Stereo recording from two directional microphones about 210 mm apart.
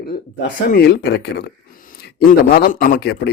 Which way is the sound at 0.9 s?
55° left (ahead or behind).